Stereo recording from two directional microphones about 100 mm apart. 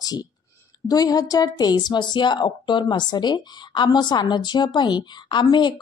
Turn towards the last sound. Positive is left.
turn(degrees=50)  # may be behind; listen again after turning